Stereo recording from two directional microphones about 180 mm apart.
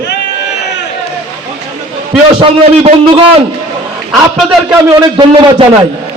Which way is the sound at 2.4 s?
30° right (ahead or behind).